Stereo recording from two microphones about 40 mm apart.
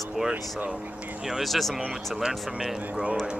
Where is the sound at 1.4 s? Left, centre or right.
Centre.